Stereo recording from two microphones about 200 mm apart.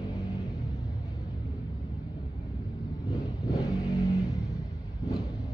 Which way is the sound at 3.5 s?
20° left (ahead or behind).